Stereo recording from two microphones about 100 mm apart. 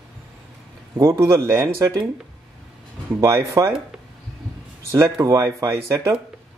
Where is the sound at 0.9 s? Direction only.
35° right (ahead or behind).